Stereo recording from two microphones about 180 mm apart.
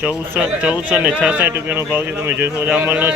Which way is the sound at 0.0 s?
10° right (ahead or behind).